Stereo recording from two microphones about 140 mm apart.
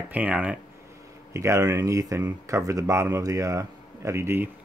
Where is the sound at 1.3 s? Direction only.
20° right (ahead or behind).